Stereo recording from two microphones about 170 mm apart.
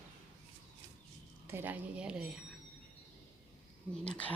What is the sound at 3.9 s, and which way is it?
Speech, 5° left (ahead or behind).